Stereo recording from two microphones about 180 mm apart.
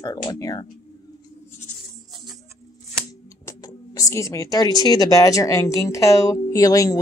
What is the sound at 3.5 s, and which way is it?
Speech, 20° left (ahead or behind).